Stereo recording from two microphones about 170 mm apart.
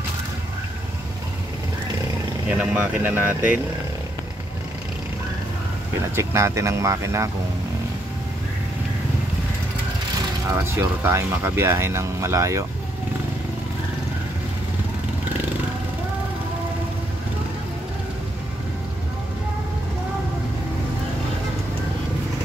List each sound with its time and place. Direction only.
2.5 s speech: 10° right (ahead or behind)
6.1 s speech: 15° right (ahead or behind)
10.5 s speech: 15° right (ahead or behind)